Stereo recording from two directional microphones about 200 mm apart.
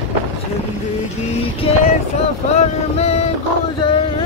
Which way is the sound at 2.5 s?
30° left (ahead or behind).